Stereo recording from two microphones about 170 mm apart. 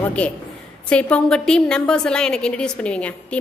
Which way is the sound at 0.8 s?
5° left (ahead or behind).